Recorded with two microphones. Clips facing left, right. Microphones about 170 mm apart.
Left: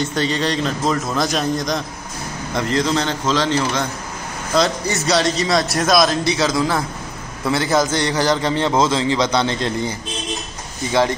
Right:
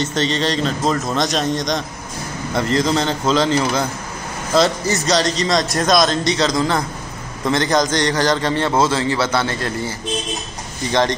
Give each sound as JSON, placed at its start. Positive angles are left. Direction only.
{"t": 0.0, "sound": "a man's voice", "side_deg": 0}
{"t": 10.9, "sound": "a man's voice", "side_deg": 5}